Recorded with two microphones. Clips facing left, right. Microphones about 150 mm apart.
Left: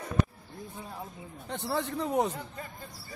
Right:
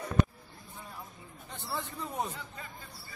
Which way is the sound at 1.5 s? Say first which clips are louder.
Left 7 dB; 75° left (ahead or behind).